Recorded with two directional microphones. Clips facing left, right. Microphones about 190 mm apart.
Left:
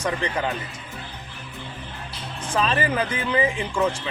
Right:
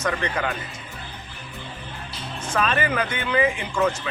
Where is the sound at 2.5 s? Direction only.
30° left (ahead or behind).